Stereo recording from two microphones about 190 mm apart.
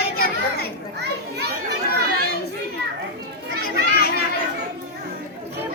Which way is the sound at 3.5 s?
60° right (ahead or behind).